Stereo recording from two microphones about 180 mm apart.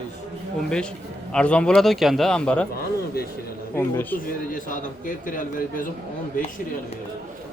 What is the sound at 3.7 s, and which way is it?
Speech, 10° left (ahead or behind).